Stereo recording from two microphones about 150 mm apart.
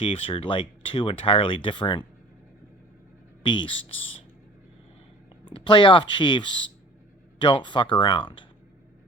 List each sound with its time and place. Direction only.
0.0 s speech: 35° left (ahead or behind)
3.4 s speech: 35° left (ahead or behind)
5.5 s speech: 35° left (ahead or behind)